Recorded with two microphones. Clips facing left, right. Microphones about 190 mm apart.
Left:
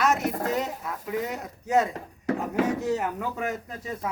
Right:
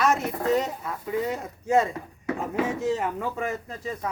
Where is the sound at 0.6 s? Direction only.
5° left (ahead or behind).